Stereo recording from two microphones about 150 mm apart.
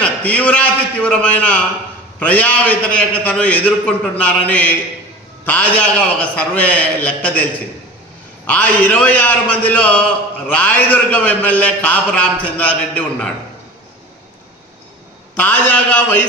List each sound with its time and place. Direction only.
0.0 s a man's voice: 10° left (ahead or behind)
15.3 s a man's voice: 10° left (ahead or behind)